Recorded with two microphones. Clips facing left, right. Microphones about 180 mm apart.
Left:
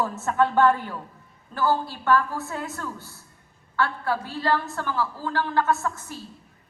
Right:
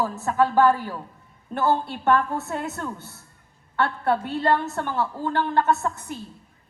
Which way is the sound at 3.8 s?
25° right (ahead or behind).